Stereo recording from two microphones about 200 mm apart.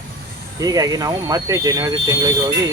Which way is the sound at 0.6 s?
20° right (ahead or behind).